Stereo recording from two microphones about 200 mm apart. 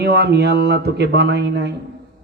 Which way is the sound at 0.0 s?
55° right (ahead or behind).